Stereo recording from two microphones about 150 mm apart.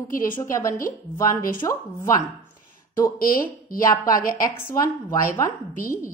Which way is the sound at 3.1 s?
70° left (ahead or behind).